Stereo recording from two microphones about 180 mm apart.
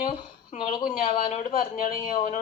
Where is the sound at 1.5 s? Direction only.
50° left (ahead or behind).